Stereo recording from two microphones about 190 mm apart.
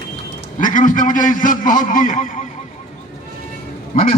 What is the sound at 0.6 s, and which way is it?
A man's voice, 45° left (ahead or behind).